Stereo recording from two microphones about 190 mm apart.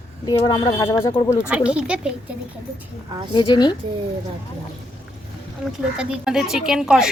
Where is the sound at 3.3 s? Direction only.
25° left (ahead or behind).